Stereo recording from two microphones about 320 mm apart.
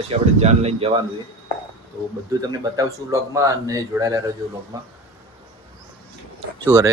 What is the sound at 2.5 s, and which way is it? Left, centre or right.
Speech, centre.